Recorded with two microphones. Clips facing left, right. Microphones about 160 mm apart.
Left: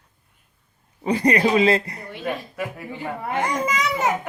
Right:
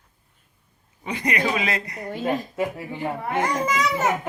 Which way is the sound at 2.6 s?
25° right (ahead or behind).